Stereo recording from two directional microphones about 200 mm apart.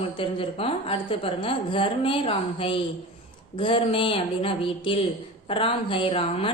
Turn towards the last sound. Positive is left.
turn(degrees=30)  # may be behind; listen again after turning